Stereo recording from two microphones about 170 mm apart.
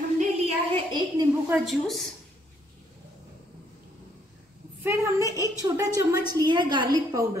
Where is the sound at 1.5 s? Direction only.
Centre (ahead or behind).